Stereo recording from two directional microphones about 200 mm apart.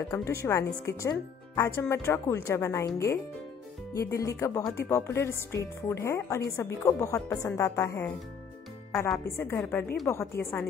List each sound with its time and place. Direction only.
0.1 s a woman's voice: 15° left (ahead or behind)
3.9 s a woman's voice: 15° left (ahead or behind)
8.9 s a woman's voice: 5° left (ahead or behind)